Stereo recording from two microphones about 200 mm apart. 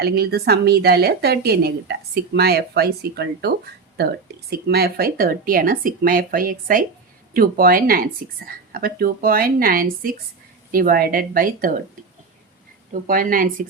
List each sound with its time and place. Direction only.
0.0 s a woman's voice: 50° right (ahead or behind)
12.9 s a woman's voice: 45° right (ahead or behind)